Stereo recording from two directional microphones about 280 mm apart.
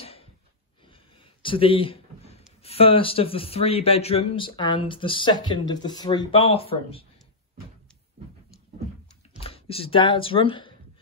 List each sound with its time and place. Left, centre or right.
0.0 s a sound: left
1.4 s speech: centre
9.4 s speech: centre